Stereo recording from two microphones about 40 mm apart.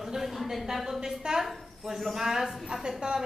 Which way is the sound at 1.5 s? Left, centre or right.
Centre.